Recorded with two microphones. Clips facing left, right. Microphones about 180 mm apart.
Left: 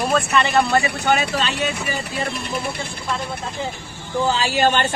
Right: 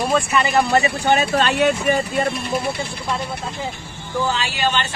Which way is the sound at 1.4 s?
65° right (ahead or behind).